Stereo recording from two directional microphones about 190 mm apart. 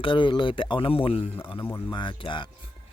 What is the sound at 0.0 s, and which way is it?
Speech, 25° left (ahead or behind).